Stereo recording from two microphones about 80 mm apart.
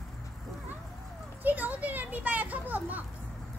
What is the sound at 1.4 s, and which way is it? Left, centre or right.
Children playing, right.